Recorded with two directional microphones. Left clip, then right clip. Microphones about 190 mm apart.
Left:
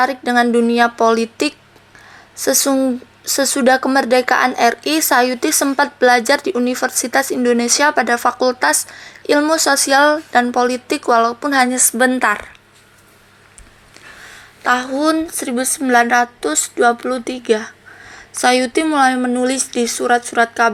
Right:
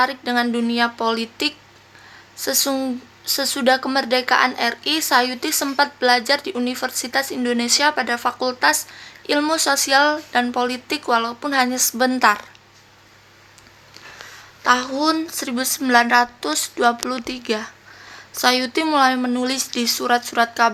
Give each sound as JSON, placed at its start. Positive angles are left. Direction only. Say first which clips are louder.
{"t": 0.0, "sound": "speech", "louder": "left 5 dB", "side_deg": 30}
{"t": 14.6, "sound": "speech", "louder": "left 2 dB", "side_deg": 15}